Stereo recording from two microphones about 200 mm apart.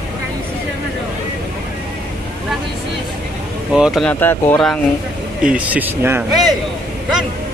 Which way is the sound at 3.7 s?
Centre (ahead or behind).